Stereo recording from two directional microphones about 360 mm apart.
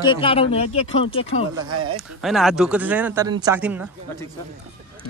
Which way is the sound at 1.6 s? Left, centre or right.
Right.